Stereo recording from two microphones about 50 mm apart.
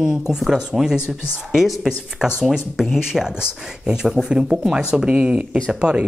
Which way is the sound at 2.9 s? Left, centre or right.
Centre.